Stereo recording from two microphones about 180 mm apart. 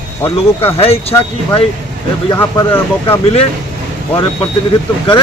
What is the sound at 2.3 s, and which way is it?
Speech, 15° left (ahead or behind).